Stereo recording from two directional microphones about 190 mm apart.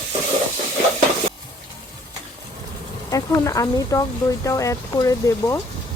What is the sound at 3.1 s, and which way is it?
Speech, 20° left (ahead or behind).